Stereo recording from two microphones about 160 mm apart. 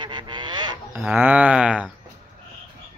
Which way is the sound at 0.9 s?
10° right (ahead or behind).